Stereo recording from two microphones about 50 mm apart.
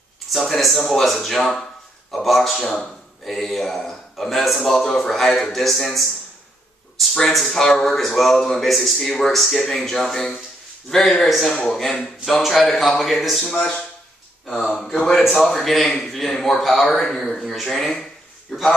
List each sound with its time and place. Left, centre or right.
0.3 s a man's voice: centre
7.2 s a man's voice: centre
12.4 s a man's voice: centre
13.5 s speech: centre
14.5 s a man's voice: centre